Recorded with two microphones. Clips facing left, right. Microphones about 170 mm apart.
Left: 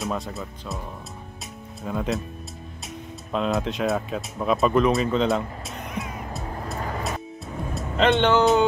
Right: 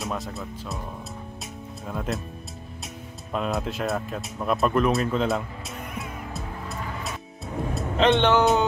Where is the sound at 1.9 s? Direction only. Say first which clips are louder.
Left 3 dB; centre (ahead or behind).